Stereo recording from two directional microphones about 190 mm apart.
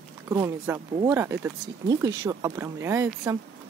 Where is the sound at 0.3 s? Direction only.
15° right (ahead or behind).